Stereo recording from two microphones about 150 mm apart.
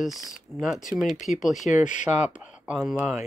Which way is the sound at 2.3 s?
5° right (ahead or behind).